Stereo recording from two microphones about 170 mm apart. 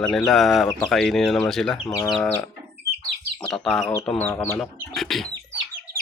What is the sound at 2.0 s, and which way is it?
Livestock, 5° left (ahead or behind).